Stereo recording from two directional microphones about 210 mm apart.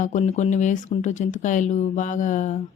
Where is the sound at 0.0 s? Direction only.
35° left (ahead or behind).